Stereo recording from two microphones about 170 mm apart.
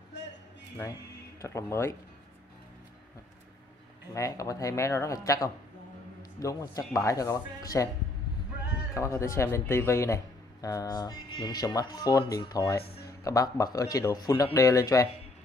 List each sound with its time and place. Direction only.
1.4 s speech: 15° left (ahead or behind)
4.1 s a man's voice: 20° left (ahead or behind)
8.9 s a man's voice: 15° left (ahead or behind)